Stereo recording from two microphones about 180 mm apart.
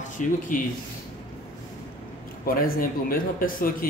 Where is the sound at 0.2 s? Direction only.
45° left (ahead or behind).